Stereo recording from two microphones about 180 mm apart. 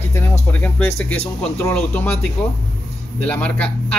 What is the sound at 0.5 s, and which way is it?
Speech, 10° left (ahead or behind).